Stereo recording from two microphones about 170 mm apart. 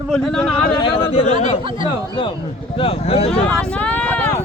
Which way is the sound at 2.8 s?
35° left (ahead or behind).